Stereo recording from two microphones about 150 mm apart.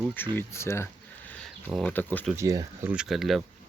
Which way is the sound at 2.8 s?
5° right (ahead or behind).